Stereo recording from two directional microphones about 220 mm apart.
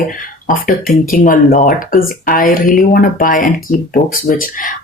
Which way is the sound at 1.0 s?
40° left (ahead or behind).